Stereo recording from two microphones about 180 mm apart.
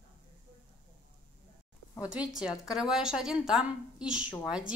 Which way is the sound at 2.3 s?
5° right (ahead or behind).